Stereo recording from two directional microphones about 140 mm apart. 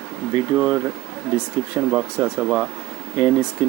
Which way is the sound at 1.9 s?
15° right (ahead or behind).